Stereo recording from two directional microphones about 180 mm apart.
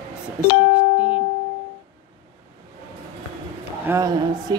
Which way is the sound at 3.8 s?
15° right (ahead or behind).